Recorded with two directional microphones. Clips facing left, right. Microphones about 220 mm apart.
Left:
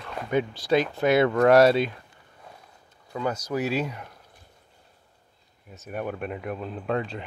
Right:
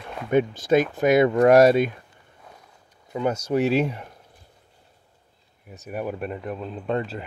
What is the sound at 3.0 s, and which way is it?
Speech, 20° right (ahead or behind).